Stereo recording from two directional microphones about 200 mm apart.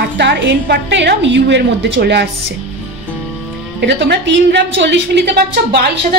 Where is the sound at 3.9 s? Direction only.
60° right (ahead or behind).